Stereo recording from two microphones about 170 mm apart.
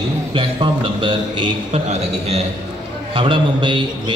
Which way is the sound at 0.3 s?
30° right (ahead or behind).